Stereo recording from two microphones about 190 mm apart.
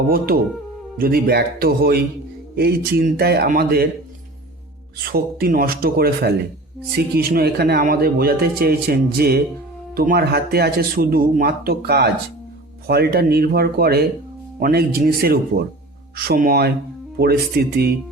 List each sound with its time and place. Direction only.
0.9 s speech: 50° right (ahead or behind)
5.1 s speech: 50° right (ahead or behind)